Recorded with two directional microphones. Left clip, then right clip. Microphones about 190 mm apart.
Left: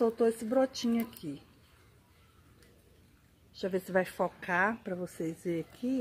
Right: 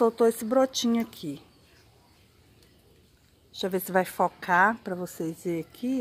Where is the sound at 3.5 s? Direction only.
10° right (ahead or behind).